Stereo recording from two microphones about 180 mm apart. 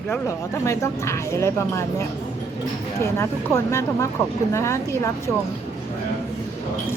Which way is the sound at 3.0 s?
15° left (ahead or behind).